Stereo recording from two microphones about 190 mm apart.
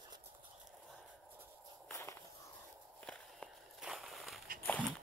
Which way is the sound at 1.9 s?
15° left (ahead or behind).